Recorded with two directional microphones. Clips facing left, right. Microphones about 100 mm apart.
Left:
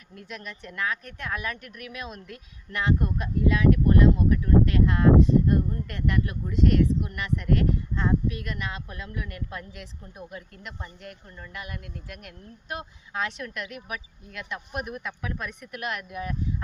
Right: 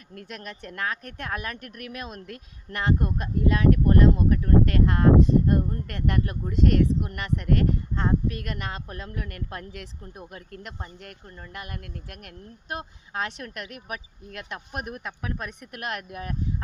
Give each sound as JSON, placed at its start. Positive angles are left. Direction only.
{"t": 0.1, "sound": "speech", "side_deg": -50}